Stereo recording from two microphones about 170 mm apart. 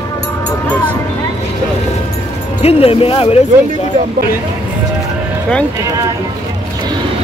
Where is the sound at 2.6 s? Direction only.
35° left (ahead or behind).